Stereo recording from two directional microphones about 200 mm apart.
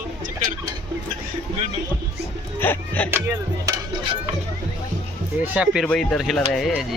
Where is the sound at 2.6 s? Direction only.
10° left (ahead or behind).